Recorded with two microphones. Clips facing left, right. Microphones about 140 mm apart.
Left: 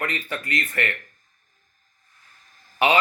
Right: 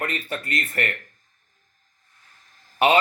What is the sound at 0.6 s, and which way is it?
Speech, 30° right (ahead or behind).